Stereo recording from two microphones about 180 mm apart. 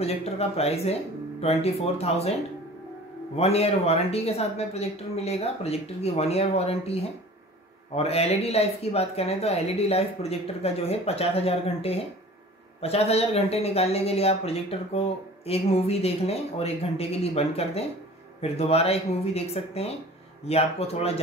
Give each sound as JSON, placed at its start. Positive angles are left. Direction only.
{"t": 0.0, "sound": "speech", "side_deg": 35}
{"t": 3.3, "sound": "speech", "side_deg": 35}